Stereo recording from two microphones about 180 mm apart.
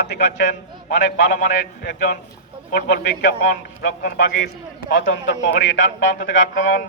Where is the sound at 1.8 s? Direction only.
60° left (ahead or behind).